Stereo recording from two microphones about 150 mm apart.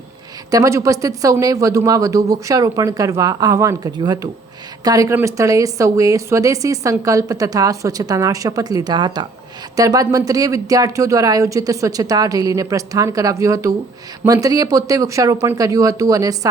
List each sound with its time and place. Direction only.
0.5 s a woman's voice: 20° right (ahead or behind)